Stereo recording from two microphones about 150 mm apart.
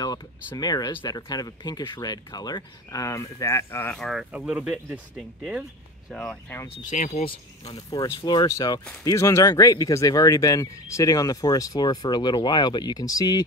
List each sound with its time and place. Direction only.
0.6 s speech: 25° left (ahead or behind)
4.0 s speech: centre (ahead or behind)
6.1 s speech: 5° left (ahead or behind)
6.9 s speech: 60° left (ahead or behind)
7.7 s speech: 25° left (ahead or behind)